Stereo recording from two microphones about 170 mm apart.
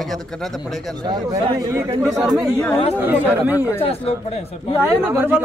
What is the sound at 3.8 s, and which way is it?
Speech, 35° left (ahead or behind).